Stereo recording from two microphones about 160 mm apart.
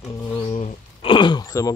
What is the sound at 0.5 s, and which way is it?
Speech, 35° left (ahead or behind).